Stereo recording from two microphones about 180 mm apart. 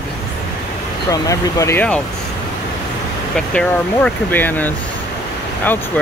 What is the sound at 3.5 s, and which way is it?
Speech, 10° left (ahead or behind).